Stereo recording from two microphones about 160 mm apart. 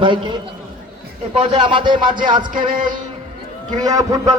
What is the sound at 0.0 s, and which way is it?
A man's voice, 30° right (ahead or behind).